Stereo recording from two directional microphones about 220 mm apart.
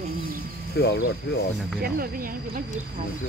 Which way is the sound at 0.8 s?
45° left (ahead or behind).